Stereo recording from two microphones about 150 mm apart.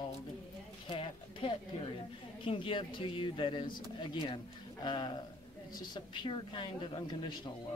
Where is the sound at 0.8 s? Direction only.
35° left (ahead or behind).